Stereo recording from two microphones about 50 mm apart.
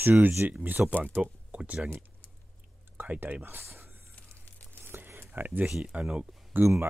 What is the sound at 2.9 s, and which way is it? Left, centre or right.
Speech, right.